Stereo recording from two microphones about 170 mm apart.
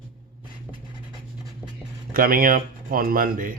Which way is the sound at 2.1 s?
60° right (ahead or behind).